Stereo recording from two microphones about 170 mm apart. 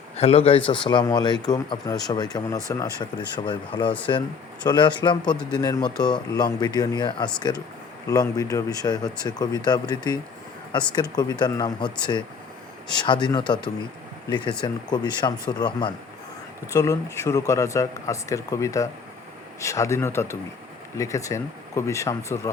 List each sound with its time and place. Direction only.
0.2 s speech: 35° left (ahead or behind); by 22.4 s 15° left (ahead or behind)